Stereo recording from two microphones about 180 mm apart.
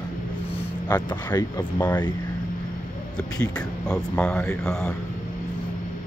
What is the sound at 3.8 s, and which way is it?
Speech, 5° left (ahead or behind).